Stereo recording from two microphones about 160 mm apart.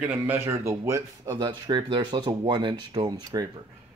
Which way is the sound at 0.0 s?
10° right (ahead or behind).